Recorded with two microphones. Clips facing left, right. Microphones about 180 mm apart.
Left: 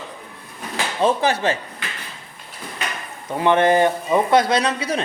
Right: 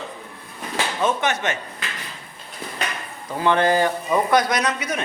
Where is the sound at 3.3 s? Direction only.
20° left (ahead or behind).